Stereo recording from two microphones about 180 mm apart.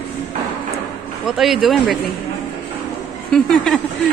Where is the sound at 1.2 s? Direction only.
Centre (ahead or behind).